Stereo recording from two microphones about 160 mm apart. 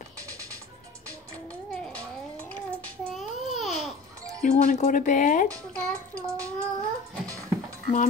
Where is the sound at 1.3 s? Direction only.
5° left (ahead or behind).